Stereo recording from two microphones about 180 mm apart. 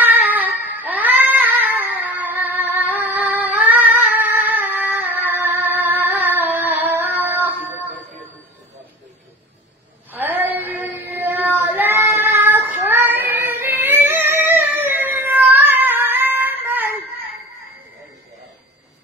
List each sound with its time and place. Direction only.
0.0 s a sound: 10° right (ahead or behind)
5.4 s music: 10° right (ahead or behind)
10.1 s child singing: 10° right (ahead or behind)